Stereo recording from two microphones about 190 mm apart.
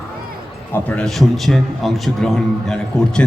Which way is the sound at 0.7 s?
5° left (ahead or behind).